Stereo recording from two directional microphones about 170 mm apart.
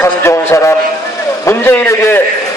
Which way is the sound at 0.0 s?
15° left (ahead or behind).